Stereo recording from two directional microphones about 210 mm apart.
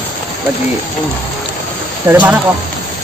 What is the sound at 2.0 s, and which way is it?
Speech, 10° right (ahead or behind).